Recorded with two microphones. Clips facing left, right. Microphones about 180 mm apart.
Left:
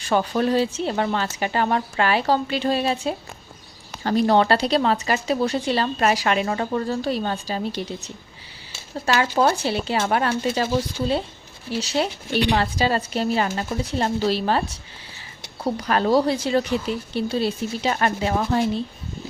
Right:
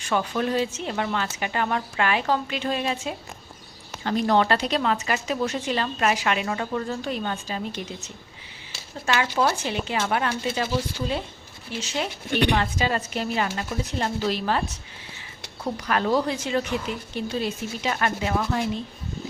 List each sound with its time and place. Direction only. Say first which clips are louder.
0.0 s speech: left 4 dB; 35° left (ahead or behind)
15.6 s speech: left 4 dB; 35° left (ahead or behind)